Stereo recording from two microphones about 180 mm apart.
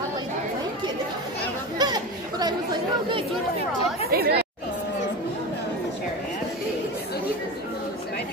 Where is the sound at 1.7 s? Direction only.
20° right (ahead or behind).